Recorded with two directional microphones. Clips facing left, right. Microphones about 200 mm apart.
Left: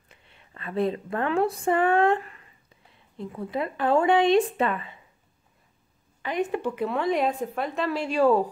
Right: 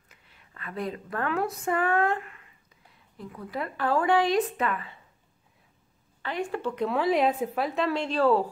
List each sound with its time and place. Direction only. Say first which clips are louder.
0.1 s speech: left 4 dB; 25° left (ahead or behind)
6.2 s speech: left 4 dB; 20° left (ahead or behind)
6.7 s a woman's voice: even; 5° left (ahead or behind)